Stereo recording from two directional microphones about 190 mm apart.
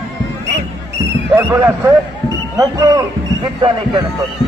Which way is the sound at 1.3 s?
15° right (ahead or behind).